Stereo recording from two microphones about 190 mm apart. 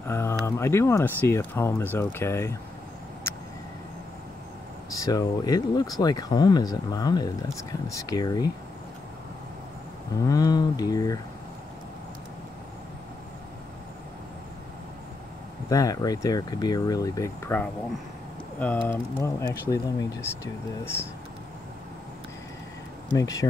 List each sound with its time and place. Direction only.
0.0 s a sound: 15° left (ahead or behind)
0.5 s speech: 15° left (ahead or behind)
4.9 s speech: 20° left (ahead or behind)
10.2 s speech: 20° left (ahead or behind)
15.7 s speech: 20° left (ahead or behind)
23.1 s speech: 20° left (ahead or behind)